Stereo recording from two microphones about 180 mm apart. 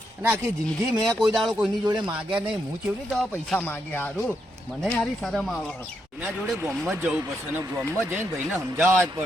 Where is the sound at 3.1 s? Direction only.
5° left (ahead or behind).